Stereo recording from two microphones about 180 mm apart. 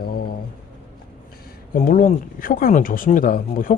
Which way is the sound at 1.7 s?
50° left (ahead or behind).